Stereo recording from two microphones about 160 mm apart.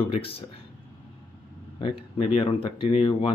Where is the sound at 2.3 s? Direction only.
35° left (ahead or behind).